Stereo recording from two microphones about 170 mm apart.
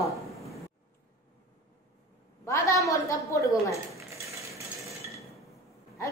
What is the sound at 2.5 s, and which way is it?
A woman's voice, 20° left (ahead or behind).